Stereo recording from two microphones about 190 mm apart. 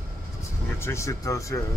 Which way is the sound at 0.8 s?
15° left (ahead or behind).